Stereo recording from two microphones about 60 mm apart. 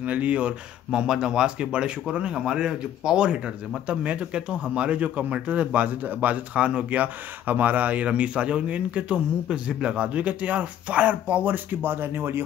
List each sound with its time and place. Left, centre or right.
0.0 s speech: right